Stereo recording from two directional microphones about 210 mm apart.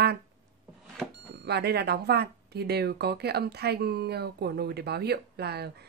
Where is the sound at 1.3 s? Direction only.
50° right (ahead or behind).